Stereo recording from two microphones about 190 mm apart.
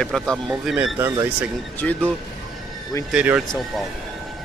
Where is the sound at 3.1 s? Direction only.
5° right (ahead or behind).